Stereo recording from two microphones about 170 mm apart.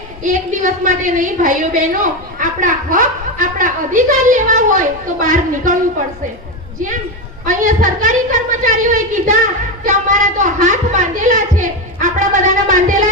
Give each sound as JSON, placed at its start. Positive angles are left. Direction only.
{"t": 0.2, "sound": "a woman's voice", "side_deg": -50}
{"t": 7.4, "sound": "a woman's voice", "side_deg": -50}
{"t": 9.8, "sound": "a sound", "side_deg": -45}